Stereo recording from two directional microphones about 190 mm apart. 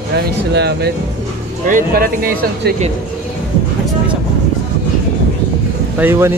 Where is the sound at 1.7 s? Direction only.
45° right (ahead or behind).